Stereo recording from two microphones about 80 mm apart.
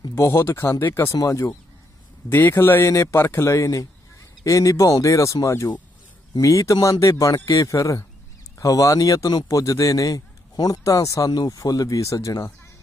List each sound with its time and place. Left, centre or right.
0.1 s speech: left
1.1 s speech: left
2.2 s a man's voice: left
2.8 s speech: left